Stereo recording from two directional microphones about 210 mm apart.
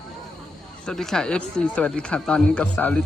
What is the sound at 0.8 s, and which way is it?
Speech, centre (ahead or behind).